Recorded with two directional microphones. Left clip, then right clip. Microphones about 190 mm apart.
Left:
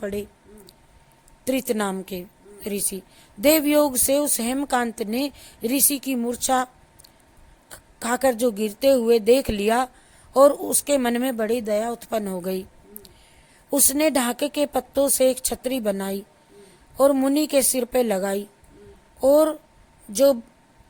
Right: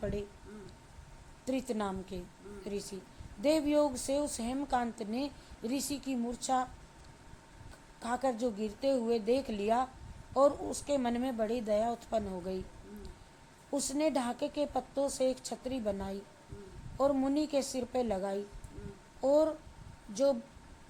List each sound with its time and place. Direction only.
0.0 s speech: 40° left (ahead or behind)
1.5 s speech: 50° left (ahead or behind)
7.9 s speech: 50° left (ahead or behind)